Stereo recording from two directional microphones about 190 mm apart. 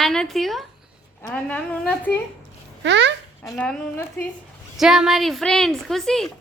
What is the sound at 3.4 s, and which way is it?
Speech, 5° left (ahead or behind).